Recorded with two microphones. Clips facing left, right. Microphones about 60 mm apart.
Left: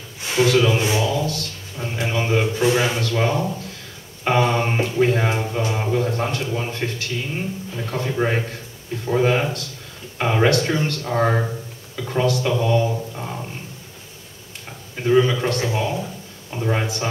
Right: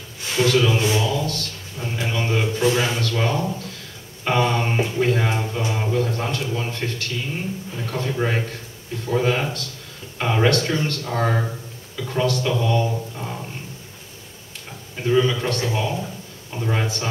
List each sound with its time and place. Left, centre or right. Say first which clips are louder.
0.2 s a sound: left 2 dB; centre
4.2 s mantra: left 2 dB; centre
4.8 s a sound: left 2 dB; centre
5.7 s speech: even; centre
10.1 s speech: left 1 dB; centre
15.0 s a man's voice: left 2 dB; centre